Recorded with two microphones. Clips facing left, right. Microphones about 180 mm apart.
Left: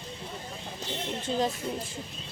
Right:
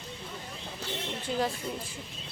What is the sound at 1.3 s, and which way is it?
Speech, 25° left (ahead or behind).